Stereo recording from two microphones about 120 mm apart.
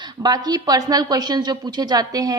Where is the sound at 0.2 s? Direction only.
35° right (ahead or behind).